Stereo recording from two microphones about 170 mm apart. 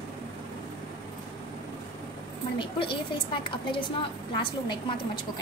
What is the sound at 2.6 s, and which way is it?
A woman's voice, 30° left (ahead or behind).